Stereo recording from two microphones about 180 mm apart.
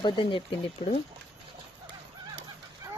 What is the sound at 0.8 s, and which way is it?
Speech, 40° left (ahead or behind).